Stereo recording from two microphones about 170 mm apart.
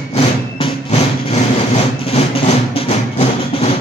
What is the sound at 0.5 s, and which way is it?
Vehicle, 40° left (ahead or behind).